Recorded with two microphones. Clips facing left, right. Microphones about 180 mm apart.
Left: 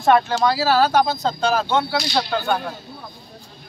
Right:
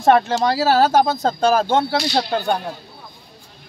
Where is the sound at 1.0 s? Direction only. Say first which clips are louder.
Right 3 dB; 50° right (ahead or behind).